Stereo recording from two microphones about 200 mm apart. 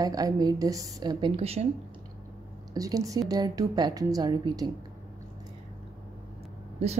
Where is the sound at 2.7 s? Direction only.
15° right (ahead or behind).